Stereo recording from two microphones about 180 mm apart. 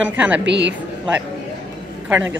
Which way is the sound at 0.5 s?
75° right (ahead or behind).